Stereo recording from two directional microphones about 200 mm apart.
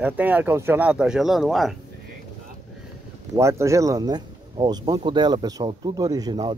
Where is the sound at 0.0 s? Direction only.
10° right (ahead or behind).